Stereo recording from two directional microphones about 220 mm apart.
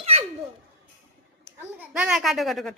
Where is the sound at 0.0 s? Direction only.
30° right (ahead or behind).